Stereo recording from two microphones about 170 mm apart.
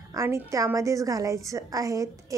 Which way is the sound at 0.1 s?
15° right (ahead or behind).